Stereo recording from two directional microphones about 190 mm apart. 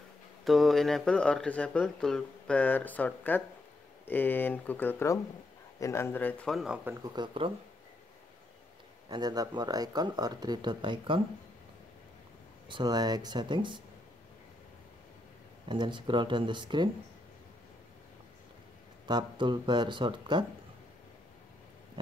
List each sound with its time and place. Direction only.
0.5 s speech: centre (ahead or behind); by 7.5 s 25° right (ahead or behind)
9.1 s speech: 20° right (ahead or behind)
12.6 s speech: 25° right (ahead or behind)
15.7 s speech: 25° right (ahead or behind)
19.0 s speech: 25° right (ahead or behind)